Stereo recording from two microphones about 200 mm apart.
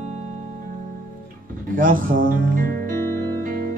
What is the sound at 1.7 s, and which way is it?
Music, 45° right (ahead or behind).